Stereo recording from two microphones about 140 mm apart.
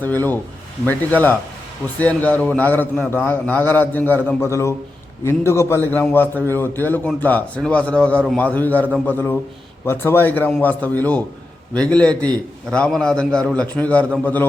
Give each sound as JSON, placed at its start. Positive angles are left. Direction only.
{"t": 0.0, "sound": "a man's voice", "side_deg": 15}